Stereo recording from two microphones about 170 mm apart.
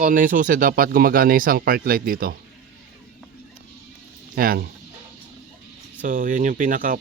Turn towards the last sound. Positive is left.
turn(degrees=-55)  # may be behind; listen again after turning